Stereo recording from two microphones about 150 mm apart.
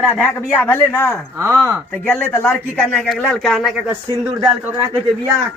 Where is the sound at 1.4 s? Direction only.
20° right (ahead or behind).